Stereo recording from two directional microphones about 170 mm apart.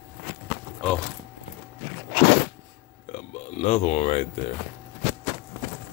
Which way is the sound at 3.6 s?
40° left (ahead or behind).